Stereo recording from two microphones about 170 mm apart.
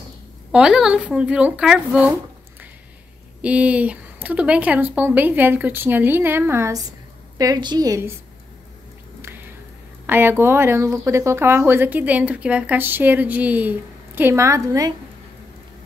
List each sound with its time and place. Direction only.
0.5 s speech: 5° right (ahead or behind)
3.4 s a woman's voice: 10° right (ahead or behind)
10.0 s speech: 10° right (ahead or behind)